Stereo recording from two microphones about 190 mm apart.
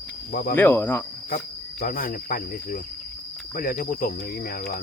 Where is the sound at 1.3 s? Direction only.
50° left (ahead or behind).